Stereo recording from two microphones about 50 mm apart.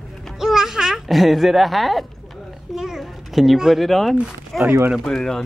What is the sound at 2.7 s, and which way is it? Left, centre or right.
A child's voice, centre.